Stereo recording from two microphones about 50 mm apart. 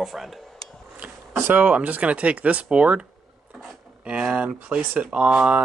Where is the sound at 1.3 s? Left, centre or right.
Right.